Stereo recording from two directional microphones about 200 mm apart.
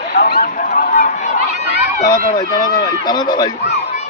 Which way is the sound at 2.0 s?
20° left (ahead or behind).